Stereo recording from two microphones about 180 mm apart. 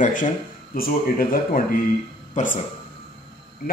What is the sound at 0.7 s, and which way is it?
A man's voice, 55° left (ahead or behind).